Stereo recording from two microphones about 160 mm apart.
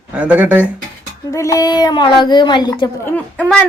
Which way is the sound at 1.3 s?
20° left (ahead or behind).